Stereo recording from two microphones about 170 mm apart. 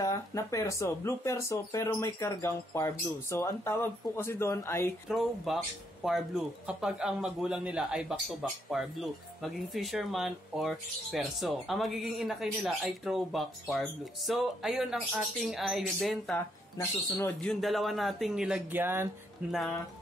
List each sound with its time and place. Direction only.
0.0 s speech: 20° left (ahead or behind)
5.0 s speech: centre (ahead or behind)
17.4 s speech: centre (ahead or behind)